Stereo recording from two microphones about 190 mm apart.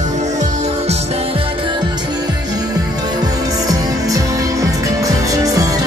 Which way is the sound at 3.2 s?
20° right (ahead or behind).